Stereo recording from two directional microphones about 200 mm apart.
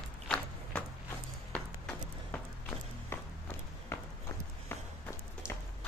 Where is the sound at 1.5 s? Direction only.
5° left (ahead or behind).